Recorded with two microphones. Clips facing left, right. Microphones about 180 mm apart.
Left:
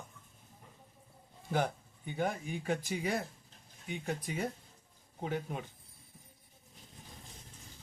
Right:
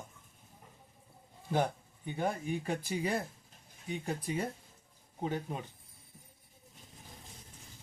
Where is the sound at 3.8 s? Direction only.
35° right (ahead or behind).